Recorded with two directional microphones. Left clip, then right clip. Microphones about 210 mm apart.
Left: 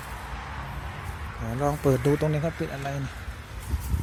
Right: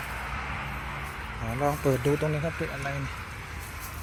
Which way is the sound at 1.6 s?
25° left (ahead or behind).